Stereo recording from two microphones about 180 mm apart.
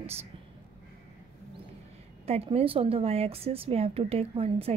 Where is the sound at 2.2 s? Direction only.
35° right (ahead or behind).